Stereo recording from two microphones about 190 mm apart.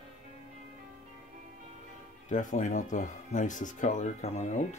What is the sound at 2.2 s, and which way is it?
Speech, 40° left (ahead or behind).